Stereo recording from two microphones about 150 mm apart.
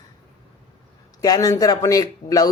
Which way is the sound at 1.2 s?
25° left (ahead or behind).